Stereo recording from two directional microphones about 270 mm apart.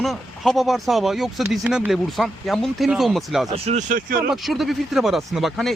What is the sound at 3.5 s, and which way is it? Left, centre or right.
Speech, right.